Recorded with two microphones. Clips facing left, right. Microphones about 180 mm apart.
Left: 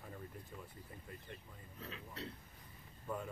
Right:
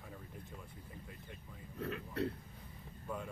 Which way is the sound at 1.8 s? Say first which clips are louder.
Right 10 dB; 55° right (ahead or behind).